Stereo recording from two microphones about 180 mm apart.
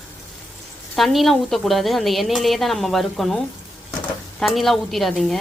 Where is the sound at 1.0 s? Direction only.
Centre (ahead or behind).